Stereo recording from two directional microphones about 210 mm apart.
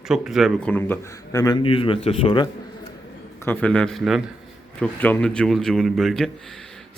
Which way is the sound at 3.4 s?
5° left (ahead or behind).